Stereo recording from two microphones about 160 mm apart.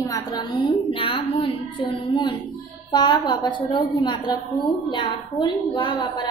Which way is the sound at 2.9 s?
25° left (ahead or behind).